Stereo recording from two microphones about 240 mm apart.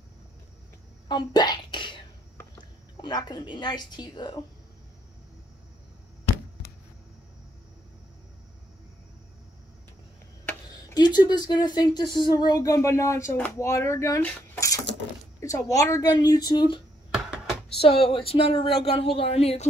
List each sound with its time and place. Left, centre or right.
1.0 s a sound: centre
3.0 s speech: centre
11.0 s speech: centre